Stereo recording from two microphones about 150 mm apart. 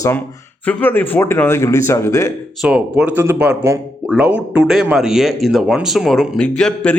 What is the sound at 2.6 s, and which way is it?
Speech, 5° right (ahead or behind).